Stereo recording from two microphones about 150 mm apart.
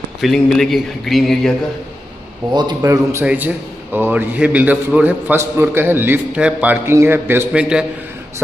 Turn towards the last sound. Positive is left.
turn(degrees=-5)  # may be behind; listen again after turning